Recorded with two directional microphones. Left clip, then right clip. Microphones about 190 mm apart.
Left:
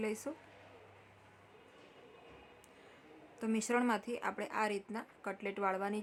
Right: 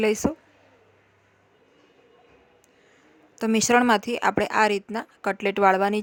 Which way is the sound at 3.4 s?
50° right (ahead or behind).